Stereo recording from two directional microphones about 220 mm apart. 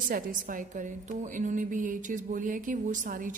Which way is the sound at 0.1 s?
40° right (ahead or behind).